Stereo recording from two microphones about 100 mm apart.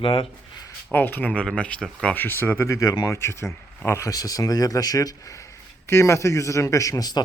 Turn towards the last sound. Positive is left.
turn(degrees=40)  # may be behind; listen again after turning